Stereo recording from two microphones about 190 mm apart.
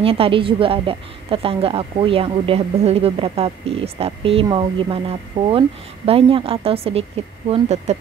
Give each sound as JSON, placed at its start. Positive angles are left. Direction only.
{"t": 0.0, "sound": "a woman's voice", "side_deg": -30}